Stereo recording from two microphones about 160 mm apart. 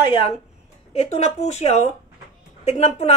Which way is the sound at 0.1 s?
35° left (ahead or behind).